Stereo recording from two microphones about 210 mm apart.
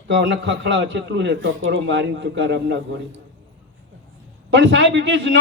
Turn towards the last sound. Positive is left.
turn(degrees=-60)  # may be behind; listen again after turning